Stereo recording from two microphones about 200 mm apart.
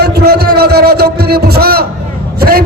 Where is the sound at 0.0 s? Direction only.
50° right (ahead or behind).